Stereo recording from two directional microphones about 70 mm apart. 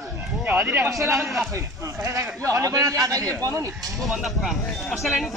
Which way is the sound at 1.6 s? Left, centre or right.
Right.